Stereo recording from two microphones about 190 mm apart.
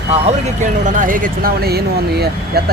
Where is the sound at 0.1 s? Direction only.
35° right (ahead or behind).